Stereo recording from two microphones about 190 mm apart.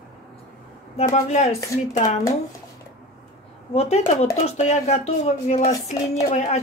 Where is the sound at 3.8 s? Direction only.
35° left (ahead or behind).